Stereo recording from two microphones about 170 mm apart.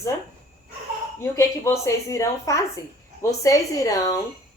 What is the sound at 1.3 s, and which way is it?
A woman's voice, 15° left (ahead or behind).